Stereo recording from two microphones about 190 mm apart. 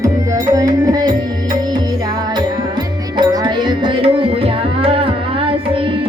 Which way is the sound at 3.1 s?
20° right (ahead or behind).